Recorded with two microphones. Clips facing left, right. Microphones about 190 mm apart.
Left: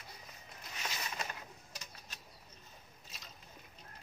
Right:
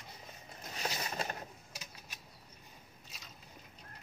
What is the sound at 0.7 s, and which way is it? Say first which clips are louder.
Vehicle: right 4 dB; 35° right (ahead or behind).